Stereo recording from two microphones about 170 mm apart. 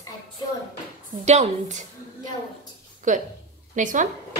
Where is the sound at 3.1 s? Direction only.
45° right (ahead or behind).